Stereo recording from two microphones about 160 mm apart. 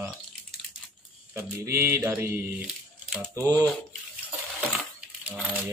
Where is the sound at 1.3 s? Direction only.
15° right (ahead or behind).